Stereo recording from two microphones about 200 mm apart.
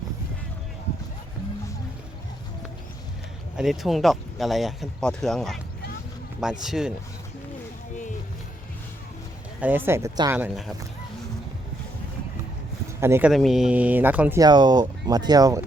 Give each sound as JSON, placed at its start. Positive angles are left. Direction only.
{"t": 3.6, "sound": "speech", "side_deg": 0}
{"t": 9.6, "sound": "speech", "side_deg": -10}
{"t": 13.0, "sound": "speech", "side_deg": -10}
{"t": 13.3, "sound": "speech", "side_deg": 0}